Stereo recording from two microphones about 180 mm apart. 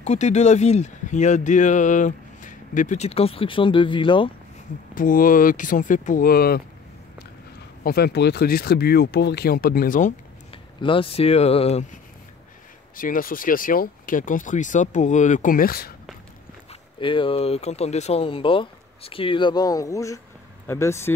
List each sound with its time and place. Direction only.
0.0 s speech: 40° left (ahead or behind)
4.9 s speech: 50° left (ahead or behind)
7.8 s speech: 60° left (ahead or behind)
10.8 s speech: 30° left (ahead or behind)
12.9 s speech: 50° left (ahead or behind)
17.0 s speech: 30° left (ahead or behind)